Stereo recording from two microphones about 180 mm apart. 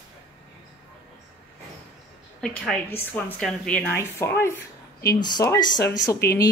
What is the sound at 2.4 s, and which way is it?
A woman's voice, 5° left (ahead or behind).